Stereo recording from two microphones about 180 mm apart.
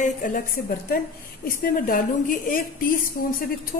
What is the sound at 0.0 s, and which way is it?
A woman's voice, 45° left (ahead or behind).